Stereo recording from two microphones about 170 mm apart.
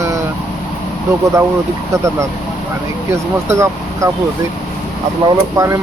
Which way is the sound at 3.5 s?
15° right (ahead or behind).